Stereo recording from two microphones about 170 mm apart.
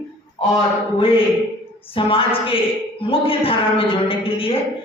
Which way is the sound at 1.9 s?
30° left (ahead or behind).